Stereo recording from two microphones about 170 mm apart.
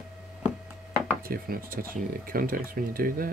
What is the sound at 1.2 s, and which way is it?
Speech, 60° right (ahead or behind).